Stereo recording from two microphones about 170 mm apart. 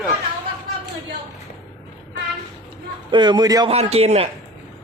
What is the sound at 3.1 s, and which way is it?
Speech, 25° right (ahead or behind).